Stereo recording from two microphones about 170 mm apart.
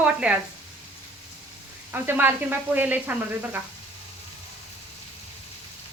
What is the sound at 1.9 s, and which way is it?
Speech, 10° right (ahead or behind).